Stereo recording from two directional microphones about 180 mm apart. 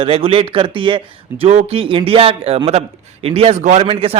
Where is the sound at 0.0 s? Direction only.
30° right (ahead or behind).